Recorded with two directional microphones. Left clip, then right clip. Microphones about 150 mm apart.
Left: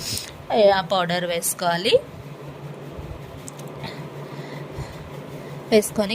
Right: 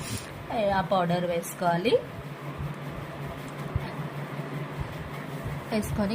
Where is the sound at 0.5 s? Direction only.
90° left.